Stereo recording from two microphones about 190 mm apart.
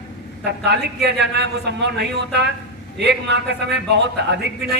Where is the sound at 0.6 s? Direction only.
60° right (ahead or behind).